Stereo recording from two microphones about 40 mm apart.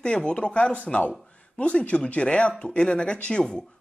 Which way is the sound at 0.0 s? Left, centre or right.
Left.